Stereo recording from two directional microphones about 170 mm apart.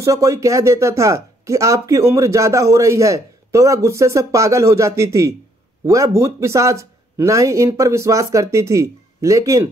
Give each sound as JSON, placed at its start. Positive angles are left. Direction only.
{"t": 0.0, "sound": "speech", "side_deg": -20}